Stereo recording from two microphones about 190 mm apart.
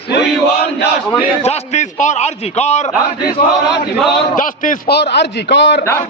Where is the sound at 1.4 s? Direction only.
35° left (ahead or behind).